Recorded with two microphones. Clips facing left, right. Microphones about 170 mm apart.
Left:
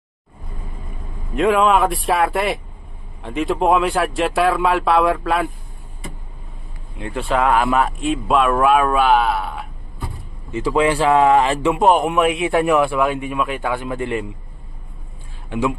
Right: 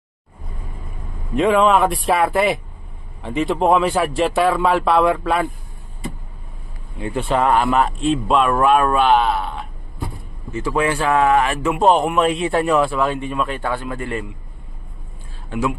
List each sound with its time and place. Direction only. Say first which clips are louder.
1.3 s speech: right 1 dB; centre (ahead or behind)
7.0 s speech: right 1 dB; centre (ahead or behind)
10.5 s speech: left 3 dB; 25° left (ahead or behind)
11.8 s speech: right 1 dB; 5° left (ahead or behind)